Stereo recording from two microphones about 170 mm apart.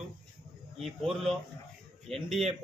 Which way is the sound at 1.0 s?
Centre (ahead or behind).